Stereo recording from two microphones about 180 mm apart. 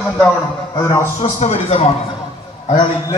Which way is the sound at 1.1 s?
40° left (ahead or behind).